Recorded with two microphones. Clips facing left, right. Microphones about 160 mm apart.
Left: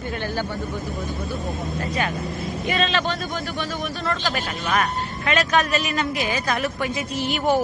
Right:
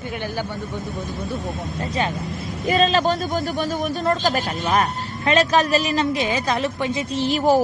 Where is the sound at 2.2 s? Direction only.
Centre (ahead or behind).